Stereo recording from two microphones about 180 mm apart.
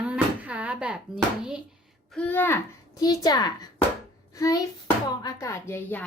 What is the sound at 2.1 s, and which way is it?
A woman's voice, 10° left (ahead or behind).